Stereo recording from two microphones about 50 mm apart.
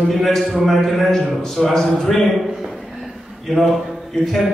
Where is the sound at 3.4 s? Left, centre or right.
Centre.